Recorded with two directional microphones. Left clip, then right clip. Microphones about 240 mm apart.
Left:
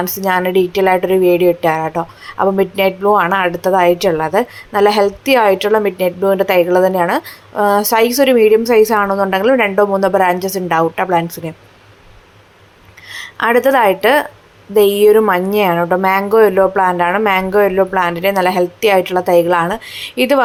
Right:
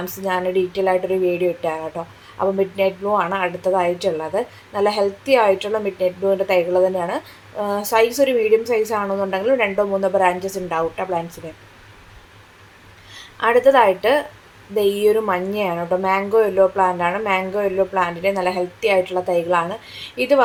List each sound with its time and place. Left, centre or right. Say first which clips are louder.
0.2 s speech: left 6 dB; left
13.1 s a woman's voice: left 4 dB; left